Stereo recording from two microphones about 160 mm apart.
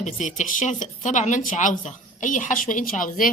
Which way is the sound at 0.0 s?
50° left (ahead or behind).